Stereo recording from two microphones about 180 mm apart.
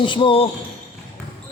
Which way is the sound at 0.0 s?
25° left (ahead or behind).